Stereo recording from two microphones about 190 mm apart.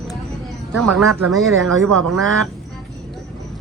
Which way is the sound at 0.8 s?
Centre (ahead or behind).